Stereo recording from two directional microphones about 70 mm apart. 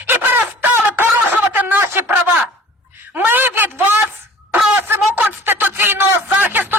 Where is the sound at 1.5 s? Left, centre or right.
Right.